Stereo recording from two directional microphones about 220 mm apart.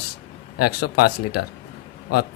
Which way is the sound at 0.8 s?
45° left (ahead or behind).